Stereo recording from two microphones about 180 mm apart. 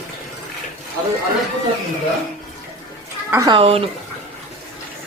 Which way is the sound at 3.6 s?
35° right (ahead or behind).